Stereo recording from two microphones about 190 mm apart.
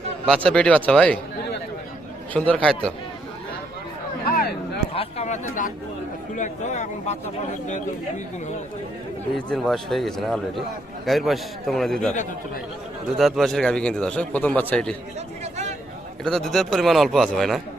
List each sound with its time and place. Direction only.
0.3 s a man's voice: 5° left (ahead or behind)
2.5 s speech: 5° left (ahead or behind)
4.3 s a sound: 55° left (ahead or behind)
4.9 s a sound: 35° left (ahead or behind)
6.3 s speech: 40° left (ahead or behind)
9.3 s a man's voice: 5° left (ahead or behind)
13.1 s a man's voice: centre (ahead or behind)
16.2 s a man's voice: centre (ahead or behind)